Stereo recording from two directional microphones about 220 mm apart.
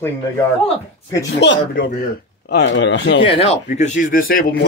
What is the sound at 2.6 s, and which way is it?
Speech, 55° left (ahead or behind).